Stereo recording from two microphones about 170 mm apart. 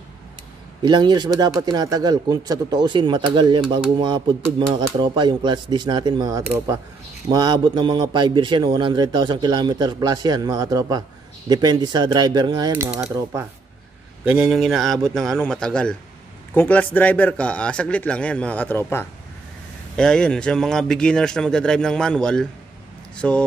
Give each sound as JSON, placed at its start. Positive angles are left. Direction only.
{"t": 0.8, "sound": "a man's voice", "side_deg": -25}
{"t": 4.7, "sound": "a man's voice", "side_deg": -25}
{"t": 14.2, "sound": "speech", "side_deg": -5}